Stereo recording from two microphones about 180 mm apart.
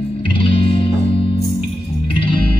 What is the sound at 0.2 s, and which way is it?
Music, 25° left (ahead or behind).